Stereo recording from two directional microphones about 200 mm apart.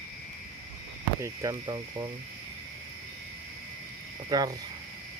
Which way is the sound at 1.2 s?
15° right (ahead or behind).